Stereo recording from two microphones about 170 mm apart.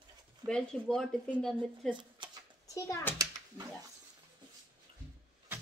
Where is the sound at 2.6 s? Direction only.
20° left (ahead or behind).